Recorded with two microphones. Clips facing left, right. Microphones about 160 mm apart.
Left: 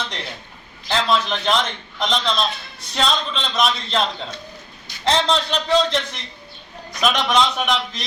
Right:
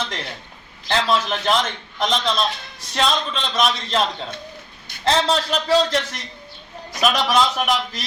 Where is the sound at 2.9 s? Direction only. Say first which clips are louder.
Right 1 dB; centre (ahead or behind).